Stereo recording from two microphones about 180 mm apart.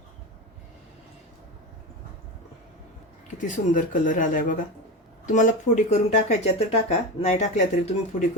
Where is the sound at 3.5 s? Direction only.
45° left (ahead or behind).